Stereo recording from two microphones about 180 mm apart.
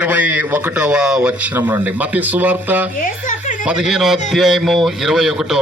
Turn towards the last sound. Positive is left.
turn(degrees=-5)  # may be behind; listen again after turning